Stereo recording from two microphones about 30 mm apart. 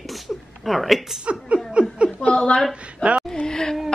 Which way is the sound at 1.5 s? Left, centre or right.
Right.